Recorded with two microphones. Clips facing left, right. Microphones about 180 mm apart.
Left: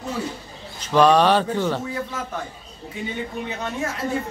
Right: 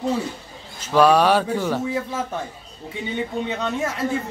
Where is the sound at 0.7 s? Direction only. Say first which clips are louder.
Even; 5° right (ahead or behind).